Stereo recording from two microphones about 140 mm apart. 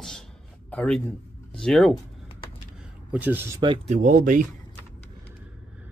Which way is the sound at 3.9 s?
70° right (ahead or behind).